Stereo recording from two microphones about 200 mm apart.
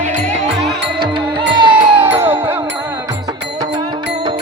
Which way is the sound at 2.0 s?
10° right (ahead or behind).